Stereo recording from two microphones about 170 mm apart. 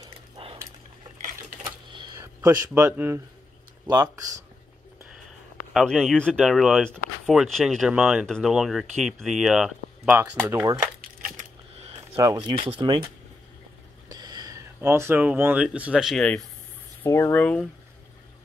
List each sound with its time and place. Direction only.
0.0 s a sound: 30° right (ahead or behind)
1.6 s typing: 30° right (ahead or behind)
2.1 s speech: 15° right (ahead or behind)
5.7 s speech: centre (ahead or behind); by 10.9 s 15° right (ahead or behind)
11.9 s speech: 25° right (ahead or behind); by 16.4 s 5° left (ahead or behind)
17.0 s speech: 15° left (ahead or behind)